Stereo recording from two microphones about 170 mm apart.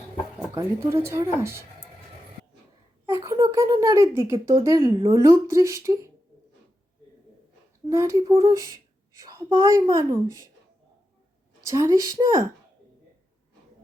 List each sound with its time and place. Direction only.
0.5 s a woman's voice: 15° right (ahead or behind)
3.2 s a woman's voice: 20° right (ahead or behind)
7.9 s a woman's voice: 15° right (ahead or behind)
11.6 s a woman's voice: 20° right (ahead or behind)